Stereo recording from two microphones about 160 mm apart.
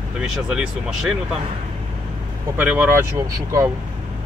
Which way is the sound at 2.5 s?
10° right (ahead or behind).